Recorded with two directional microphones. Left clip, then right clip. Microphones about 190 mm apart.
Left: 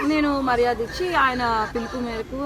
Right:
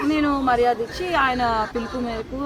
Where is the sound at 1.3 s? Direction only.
25° right (ahead or behind).